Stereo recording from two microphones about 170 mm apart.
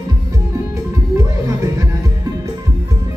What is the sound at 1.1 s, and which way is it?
Music, 15° right (ahead or behind).